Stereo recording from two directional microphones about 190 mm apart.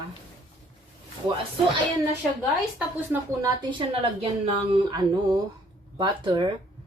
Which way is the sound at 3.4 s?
25° right (ahead or behind).